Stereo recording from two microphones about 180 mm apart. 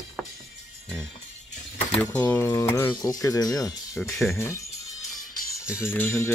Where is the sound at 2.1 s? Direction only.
10° left (ahead or behind).